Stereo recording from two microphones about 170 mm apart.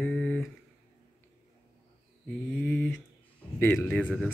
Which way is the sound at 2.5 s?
5° left (ahead or behind).